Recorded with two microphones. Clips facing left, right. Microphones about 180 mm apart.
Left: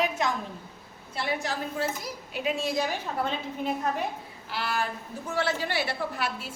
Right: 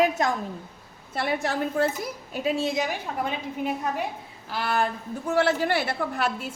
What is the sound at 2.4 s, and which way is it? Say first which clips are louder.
Speech: right 3 dB; 25° right (ahead or behind).